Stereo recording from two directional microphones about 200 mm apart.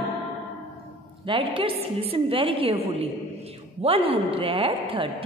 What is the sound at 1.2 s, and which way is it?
A woman's voice, 25° right (ahead or behind).